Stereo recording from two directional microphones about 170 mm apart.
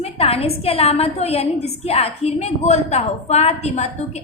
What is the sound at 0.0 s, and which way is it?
A woman's voice, 35° left (ahead or behind).